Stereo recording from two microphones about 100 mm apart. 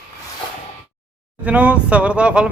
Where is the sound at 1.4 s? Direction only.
15° right (ahead or behind).